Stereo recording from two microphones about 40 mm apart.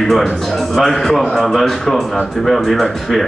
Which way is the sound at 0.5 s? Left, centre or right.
Centre.